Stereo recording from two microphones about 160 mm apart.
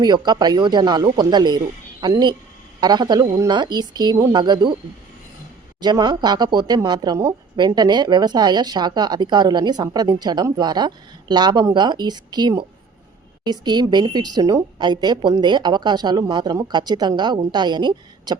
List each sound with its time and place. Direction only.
0.0 s a woman's voice: 25° right (ahead or behind)
5.8 s a woman's voice: 25° right (ahead or behind)